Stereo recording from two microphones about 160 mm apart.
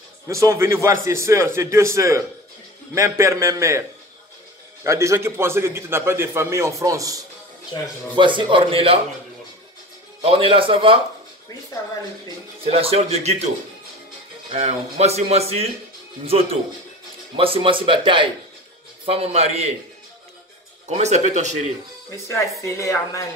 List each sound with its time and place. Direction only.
0.3 s a man's voice: 20° right (ahead or behind)
4.8 s a man's voice: 20° right (ahead or behind)
8.2 s speech: 30° right (ahead or behind)
10.2 s speech: 35° right (ahead or behind)
12.6 s speech: 40° right (ahead or behind)
14.5 s speech: 45° right (ahead or behind)
17.4 s speech: 35° right (ahead or behind)
20.9 s speech: 45° right (ahead or behind)
22.1 s speech: 15° left (ahead or behind)